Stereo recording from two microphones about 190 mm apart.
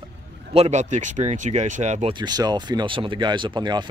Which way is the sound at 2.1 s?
20° right (ahead or behind).